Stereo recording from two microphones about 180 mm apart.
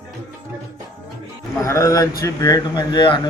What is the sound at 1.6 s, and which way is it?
Speech, 15° left (ahead or behind).